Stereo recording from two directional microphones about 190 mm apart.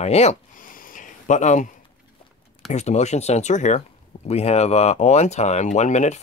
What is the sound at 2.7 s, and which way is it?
Speech, 35° left (ahead or behind).